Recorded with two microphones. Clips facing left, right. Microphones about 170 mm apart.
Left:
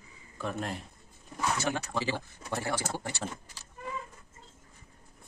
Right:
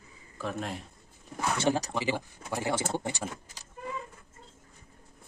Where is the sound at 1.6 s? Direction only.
35° right (ahead or behind).